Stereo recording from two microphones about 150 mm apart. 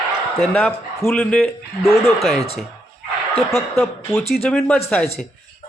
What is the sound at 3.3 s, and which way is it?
Speech, centre (ahead or behind).